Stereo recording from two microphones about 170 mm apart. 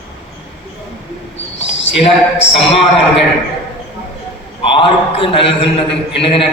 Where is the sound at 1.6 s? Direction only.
90° left.